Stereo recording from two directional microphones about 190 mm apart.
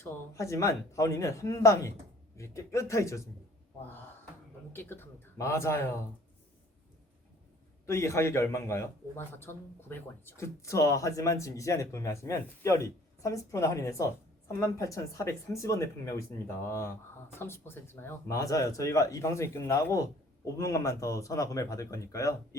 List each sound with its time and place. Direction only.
0.0 s a man's voice: 15° left (ahead or behind)
4.7 s a man's voice: 10° left (ahead or behind)
7.9 s a man's voice: 15° left (ahead or behind)